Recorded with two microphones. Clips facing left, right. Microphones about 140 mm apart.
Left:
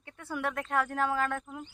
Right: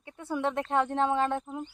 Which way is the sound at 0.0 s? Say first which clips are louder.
Right 4 dB; 20° right (ahead or behind).